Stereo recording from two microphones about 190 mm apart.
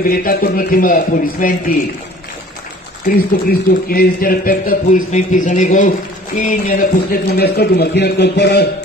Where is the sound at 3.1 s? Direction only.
50° left (ahead or behind).